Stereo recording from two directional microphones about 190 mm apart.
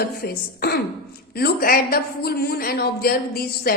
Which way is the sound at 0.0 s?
55° left (ahead or behind).